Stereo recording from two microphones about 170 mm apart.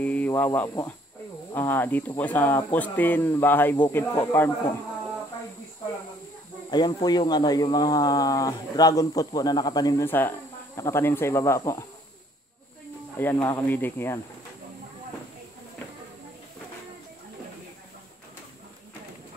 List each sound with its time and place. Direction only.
0.0 s speech: 10° left (ahead or behind)
6.7 s speech: 25° left (ahead or behind)
13.2 s speech: 10° left (ahead or behind)